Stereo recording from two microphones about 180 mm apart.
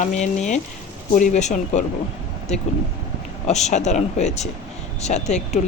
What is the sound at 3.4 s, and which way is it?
Speech, 40° left (ahead or behind).